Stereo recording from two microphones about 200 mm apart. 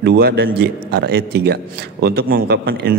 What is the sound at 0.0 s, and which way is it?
A man's voice, 55° right (ahead or behind).